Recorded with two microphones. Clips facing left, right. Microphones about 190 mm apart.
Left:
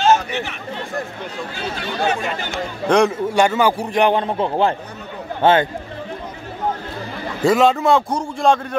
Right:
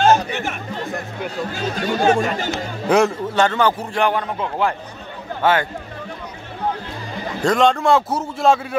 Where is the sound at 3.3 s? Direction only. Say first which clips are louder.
Left 1 dB; 10° left (ahead or behind); by 5.7 s 25° left (ahead or behind).